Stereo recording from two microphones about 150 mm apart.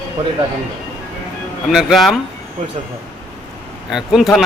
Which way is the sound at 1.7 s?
Centre (ahead or behind).